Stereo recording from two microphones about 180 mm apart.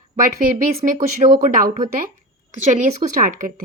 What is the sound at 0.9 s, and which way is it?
Speech, 45° right (ahead or behind).